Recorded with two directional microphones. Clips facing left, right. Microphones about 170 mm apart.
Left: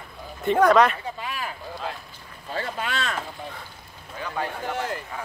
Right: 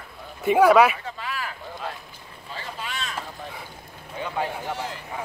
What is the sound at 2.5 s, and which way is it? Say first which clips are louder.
Boat: left 6 dB; 60° left (ahead or behind).